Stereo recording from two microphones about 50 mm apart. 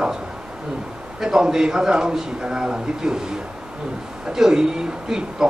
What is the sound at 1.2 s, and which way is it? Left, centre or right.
Speech, centre.